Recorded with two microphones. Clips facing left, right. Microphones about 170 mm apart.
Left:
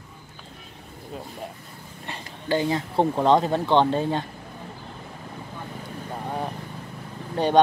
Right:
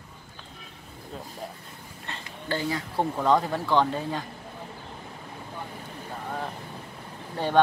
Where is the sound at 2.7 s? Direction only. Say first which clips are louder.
Left 5 dB; 30° left (ahead or behind).